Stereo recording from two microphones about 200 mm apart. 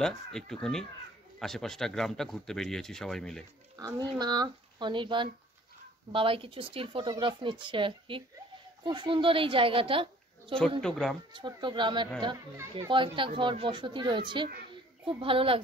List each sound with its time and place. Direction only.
0.3 s speech: 5° left (ahead or behind)
3.7 s speech: 20° right (ahead or behind)
10.8 s speech: centre (ahead or behind)
11.3 s speech: 25° right (ahead or behind)